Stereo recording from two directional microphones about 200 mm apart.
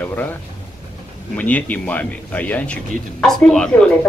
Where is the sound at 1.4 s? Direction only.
5° left (ahead or behind).